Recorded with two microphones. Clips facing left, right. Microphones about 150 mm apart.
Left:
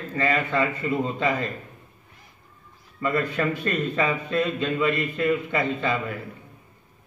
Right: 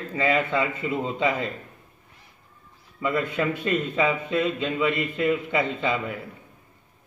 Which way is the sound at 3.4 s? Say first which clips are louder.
Even; 10° right (ahead or behind).